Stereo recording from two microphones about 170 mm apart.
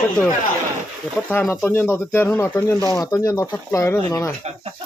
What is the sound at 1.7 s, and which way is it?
Speech, 10° left (ahead or behind).